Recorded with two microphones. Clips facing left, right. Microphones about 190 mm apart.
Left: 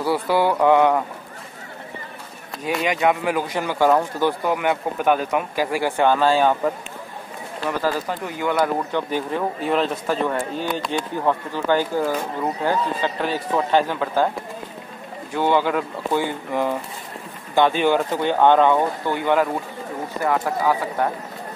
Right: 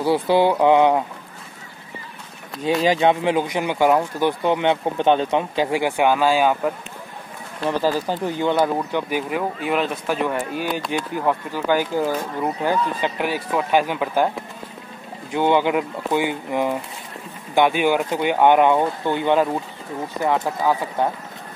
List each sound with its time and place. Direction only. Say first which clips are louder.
0.0 s speech: right 3 dB; 20° right (ahead or behind)
2.6 s speech: right 3 dB; 30° right (ahead or behind); by 6.7 s 10° right (ahead or behind)
7.8 s speech: right 3 dB; 30° right (ahead or behind)
8.9 s speech: even; 10° right (ahead or behind)
15.3 s speech: right 1 dB; 20° right (ahead or behind)